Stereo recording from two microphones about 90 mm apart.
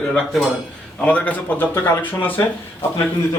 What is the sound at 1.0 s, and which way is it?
Speech, 15° left (ahead or behind).